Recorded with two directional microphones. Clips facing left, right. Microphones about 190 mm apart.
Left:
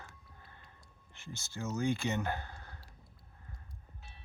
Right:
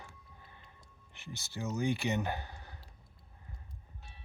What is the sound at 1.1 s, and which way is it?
Speech, 15° right (ahead or behind).